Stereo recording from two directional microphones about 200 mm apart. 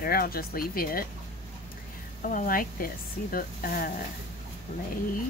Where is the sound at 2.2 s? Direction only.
45° left (ahead or behind).